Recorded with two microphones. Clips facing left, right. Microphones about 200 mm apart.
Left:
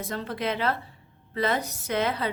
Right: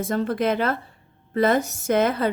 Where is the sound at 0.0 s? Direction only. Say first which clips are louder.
Right 8 dB; 50° right (ahead or behind).